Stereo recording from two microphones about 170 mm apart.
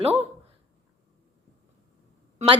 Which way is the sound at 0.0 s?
35° right (ahead or behind).